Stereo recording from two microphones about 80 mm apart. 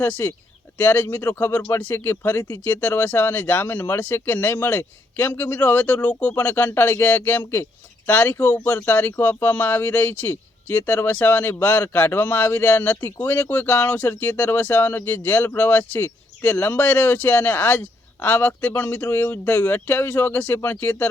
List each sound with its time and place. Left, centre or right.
0.0 s speech: centre